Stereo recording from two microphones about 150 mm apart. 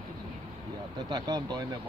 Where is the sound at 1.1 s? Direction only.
25° right (ahead or behind).